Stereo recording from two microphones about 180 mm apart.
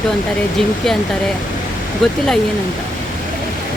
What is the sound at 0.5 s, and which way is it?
Speech, centre (ahead or behind).